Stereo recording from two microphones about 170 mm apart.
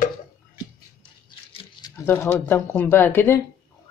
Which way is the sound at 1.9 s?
15° left (ahead or behind).